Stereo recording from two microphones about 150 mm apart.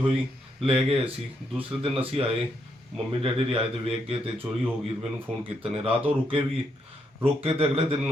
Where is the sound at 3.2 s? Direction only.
35° right (ahead or behind).